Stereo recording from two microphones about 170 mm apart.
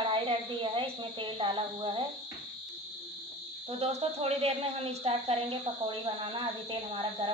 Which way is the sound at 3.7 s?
35° right (ahead or behind).